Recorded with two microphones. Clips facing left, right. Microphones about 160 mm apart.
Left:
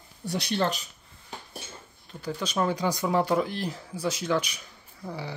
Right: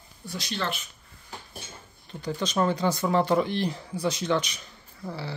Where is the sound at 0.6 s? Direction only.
40° left (ahead or behind).